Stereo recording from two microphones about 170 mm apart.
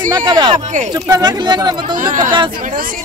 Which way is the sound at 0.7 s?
45° right (ahead or behind).